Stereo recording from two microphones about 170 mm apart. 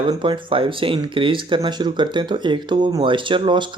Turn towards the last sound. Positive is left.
turn(degrees=-30)  # may be behind; listen again after turning